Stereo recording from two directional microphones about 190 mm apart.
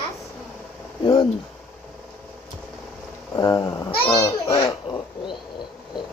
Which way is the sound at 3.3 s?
20° left (ahead or behind).